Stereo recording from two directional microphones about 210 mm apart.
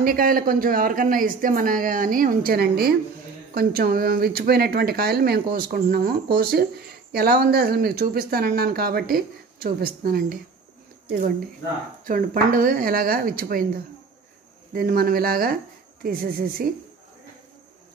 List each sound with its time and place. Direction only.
0.0 s a woman's voice: 45° right (ahead or behind)
14.7 s speech: 45° right (ahead or behind)